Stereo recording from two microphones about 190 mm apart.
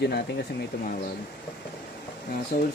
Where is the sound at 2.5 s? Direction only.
45° left (ahead or behind).